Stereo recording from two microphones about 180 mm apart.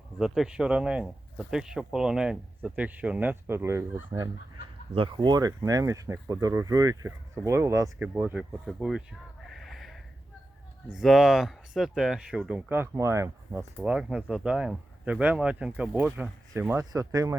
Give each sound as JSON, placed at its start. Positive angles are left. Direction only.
{"t": 0.2, "sound": "speech", "side_deg": -5}
{"t": 4.9, "sound": "speech", "side_deg": -25}
{"t": 9.5, "sound": "a sound", "side_deg": 0}
{"t": 10.9, "sound": "speech", "side_deg": 0}